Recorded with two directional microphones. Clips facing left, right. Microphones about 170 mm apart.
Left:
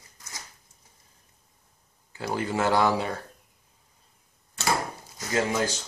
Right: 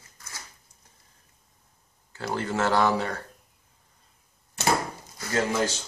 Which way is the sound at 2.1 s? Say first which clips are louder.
Even; 15° left (ahead or behind).